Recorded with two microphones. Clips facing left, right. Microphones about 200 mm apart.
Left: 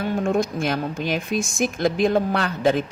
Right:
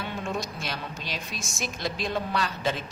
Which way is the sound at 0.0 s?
50° left (ahead or behind).